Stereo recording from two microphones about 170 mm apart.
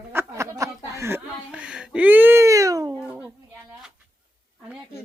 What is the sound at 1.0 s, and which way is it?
Speech, 15° right (ahead or behind).